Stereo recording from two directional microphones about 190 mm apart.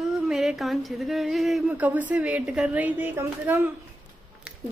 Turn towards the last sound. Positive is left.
turn(degrees=-5)  # may be behind; listen again after turning